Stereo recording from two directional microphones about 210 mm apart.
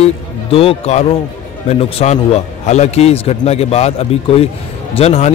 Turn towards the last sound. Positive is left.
turn(degrees=30)  # may be behind; listen again after turning